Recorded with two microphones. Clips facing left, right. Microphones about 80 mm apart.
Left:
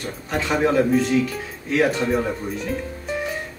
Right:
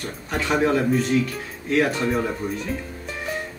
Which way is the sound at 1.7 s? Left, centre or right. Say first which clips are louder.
Left 1 dB; centre.